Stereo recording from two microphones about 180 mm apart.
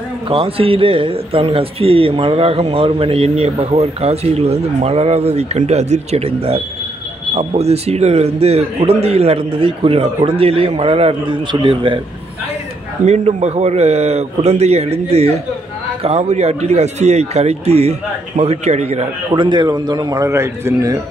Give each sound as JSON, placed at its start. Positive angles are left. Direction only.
{"t": 0.3, "sound": "a man's voice", "side_deg": -30}
{"t": 13.0, "sound": "a man's voice", "side_deg": -40}